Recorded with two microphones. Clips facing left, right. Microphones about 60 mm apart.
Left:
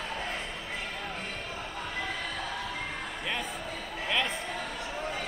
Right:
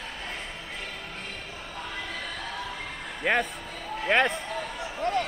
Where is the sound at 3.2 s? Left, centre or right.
Right.